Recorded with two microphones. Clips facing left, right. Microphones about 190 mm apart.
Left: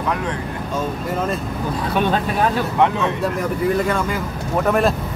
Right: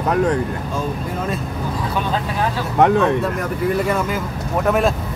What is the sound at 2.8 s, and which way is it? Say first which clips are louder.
Speech: right 4 dB; 45° right (ahead or behind).